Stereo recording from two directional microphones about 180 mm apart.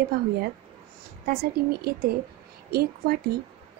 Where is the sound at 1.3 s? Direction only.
60° right (ahead or behind).